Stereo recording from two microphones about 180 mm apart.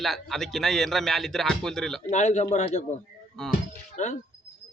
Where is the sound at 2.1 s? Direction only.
40° left (ahead or behind).